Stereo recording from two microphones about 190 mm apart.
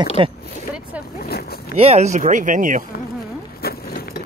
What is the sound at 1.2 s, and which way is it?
Boat, 55° left (ahead or behind).